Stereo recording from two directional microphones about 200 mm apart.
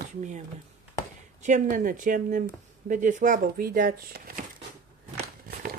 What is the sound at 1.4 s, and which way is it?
Speech, 40° right (ahead or behind).